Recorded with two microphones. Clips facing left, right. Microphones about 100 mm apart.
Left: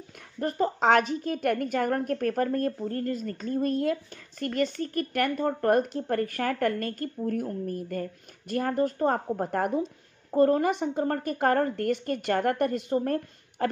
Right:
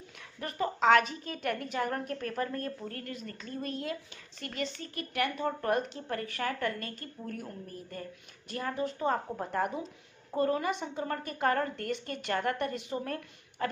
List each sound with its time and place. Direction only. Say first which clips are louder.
0.4 s speech: left 5 dB; 40° left (ahead or behind)
2.8 s speech: left 10 dB; 35° left (ahead or behind)